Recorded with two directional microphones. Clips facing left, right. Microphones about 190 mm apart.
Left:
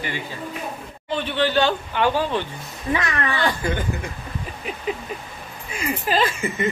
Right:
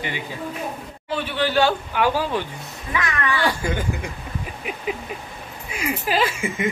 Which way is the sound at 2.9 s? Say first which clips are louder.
Left 2 dB; 30° left (ahead or behind).